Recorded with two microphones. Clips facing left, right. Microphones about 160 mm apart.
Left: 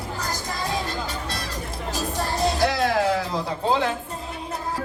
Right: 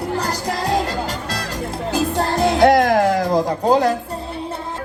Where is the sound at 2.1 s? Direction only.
60° right (ahead or behind); by 3.9 s 40° right (ahead or behind).